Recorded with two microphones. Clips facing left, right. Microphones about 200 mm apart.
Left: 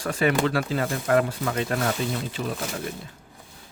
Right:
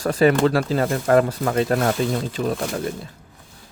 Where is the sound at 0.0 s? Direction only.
40° right (ahead or behind).